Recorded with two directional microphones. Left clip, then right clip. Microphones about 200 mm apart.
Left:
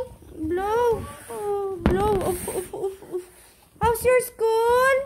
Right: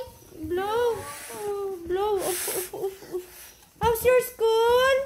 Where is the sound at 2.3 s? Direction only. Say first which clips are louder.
Left 3 dB; centre (ahead or behind).